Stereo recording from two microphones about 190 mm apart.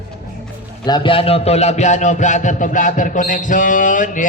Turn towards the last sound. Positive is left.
turn(degrees=45)  # may be behind; listen again after turning